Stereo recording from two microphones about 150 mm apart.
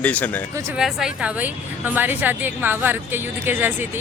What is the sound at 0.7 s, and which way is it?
A woman's voice, 5° right (ahead or behind).